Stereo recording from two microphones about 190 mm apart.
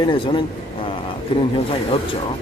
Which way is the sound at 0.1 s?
25° left (ahead or behind).